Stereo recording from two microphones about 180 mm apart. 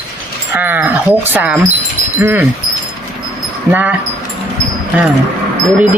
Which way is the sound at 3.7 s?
10° right (ahead or behind).